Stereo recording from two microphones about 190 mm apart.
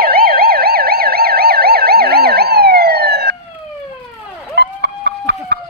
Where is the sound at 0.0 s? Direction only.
50° right (ahead or behind).